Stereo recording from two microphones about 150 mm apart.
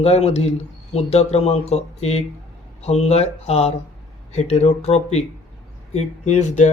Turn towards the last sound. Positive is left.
turn(degrees=50)  # may be behind; listen again after turning